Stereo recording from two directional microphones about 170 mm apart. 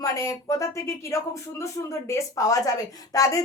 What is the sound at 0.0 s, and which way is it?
A woman's voice, 20° left (ahead or behind).